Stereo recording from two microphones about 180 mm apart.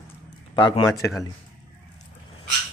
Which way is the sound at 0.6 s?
25° left (ahead or behind).